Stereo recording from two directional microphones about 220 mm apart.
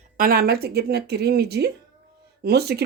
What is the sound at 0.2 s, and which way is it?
Speech, 40° right (ahead or behind).